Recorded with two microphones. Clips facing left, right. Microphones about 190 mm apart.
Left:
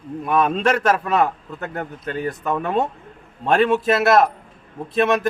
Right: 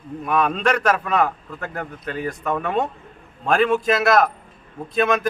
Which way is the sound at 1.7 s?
30° left (ahead or behind).